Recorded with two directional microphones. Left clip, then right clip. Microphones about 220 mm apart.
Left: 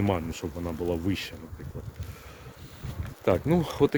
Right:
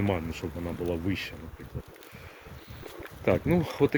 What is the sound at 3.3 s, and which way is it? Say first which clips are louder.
Speech: left 1 dB; 10° left (ahead or behind).